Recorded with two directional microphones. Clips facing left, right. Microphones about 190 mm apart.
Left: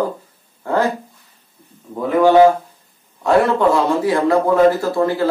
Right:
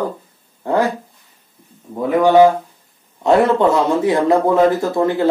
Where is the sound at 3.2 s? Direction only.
20° right (ahead or behind).